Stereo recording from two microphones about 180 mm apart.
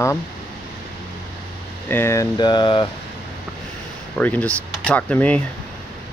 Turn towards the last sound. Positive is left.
turn(degrees=10)  # may be behind; listen again after turning